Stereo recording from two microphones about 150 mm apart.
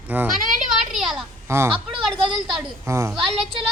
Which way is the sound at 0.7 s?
5° right (ahead or behind).